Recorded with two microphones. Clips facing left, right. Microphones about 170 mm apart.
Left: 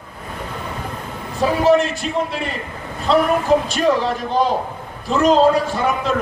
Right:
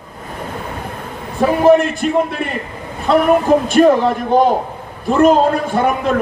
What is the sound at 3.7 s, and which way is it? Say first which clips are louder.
A man's voice: right 7 dB; 55° right (ahead or behind).